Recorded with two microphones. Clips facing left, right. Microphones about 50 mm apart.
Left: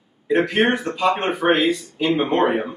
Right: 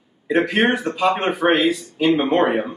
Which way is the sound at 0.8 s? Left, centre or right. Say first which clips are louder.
Right 1 dB; centre.